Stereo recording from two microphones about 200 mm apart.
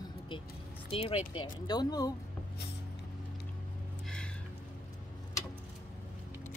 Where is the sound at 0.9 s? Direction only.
30° left (ahead or behind).